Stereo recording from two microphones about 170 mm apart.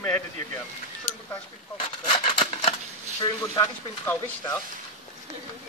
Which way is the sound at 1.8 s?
30° left (ahead or behind).